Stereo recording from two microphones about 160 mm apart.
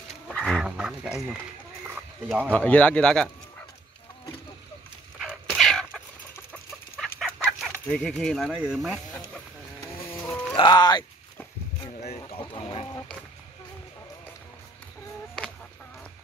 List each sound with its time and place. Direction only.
0.3 s fowl: 5° left (ahead or behind)
2.2 s speech: 5° right (ahead or behind)
2.5 s speech: 10° left (ahead or behind)
5.2 s chicken: 5° right (ahead or behind)
7.9 s speech: 5° left (ahead or behind)
8.5 s chicken: 5° right (ahead or behind)
10.1 s music: 15° left (ahead or behind)
10.5 s speech: 30° left (ahead or behind)
12.3 s speech: 35° left (ahead or behind)